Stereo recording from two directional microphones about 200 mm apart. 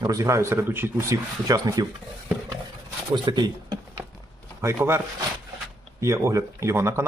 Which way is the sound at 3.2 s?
20° right (ahead or behind).